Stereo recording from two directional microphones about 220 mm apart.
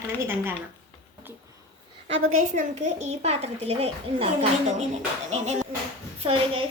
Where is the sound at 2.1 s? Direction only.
70° right (ahead or behind).